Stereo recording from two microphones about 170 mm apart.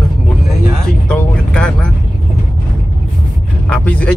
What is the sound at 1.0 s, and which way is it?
Vehicle, 5° left (ahead or behind).